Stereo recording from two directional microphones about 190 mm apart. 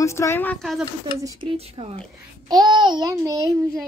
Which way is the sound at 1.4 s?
30° right (ahead or behind).